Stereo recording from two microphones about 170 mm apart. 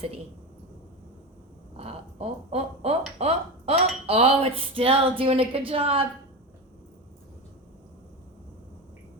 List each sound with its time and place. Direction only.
1.7 s speech: 35° right (ahead or behind)